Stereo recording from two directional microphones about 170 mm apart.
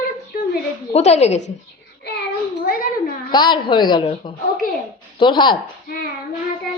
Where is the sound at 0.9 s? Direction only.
40° left (ahead or behind).